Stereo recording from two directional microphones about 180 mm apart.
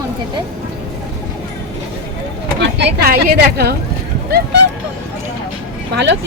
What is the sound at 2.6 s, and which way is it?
Speech, 70° right (ahead or behind).